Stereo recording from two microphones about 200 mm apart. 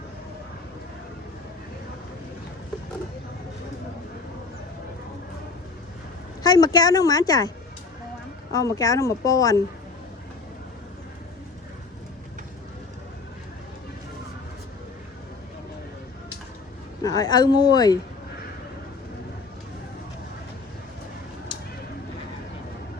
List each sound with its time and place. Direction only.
6.4 s a woman's voice: 20° left (ahead or behind)
8.5 s speech: 15° left (ahead or behind)
17.0 s a woman's voice: 20° left (ahead or behind)